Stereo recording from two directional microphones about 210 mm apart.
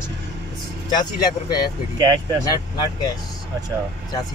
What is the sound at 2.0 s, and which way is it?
Speech, 20° right (ahead or behind).